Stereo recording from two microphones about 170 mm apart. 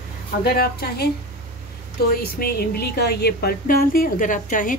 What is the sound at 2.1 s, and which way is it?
A woman's voice, 65° left (ahead or behind).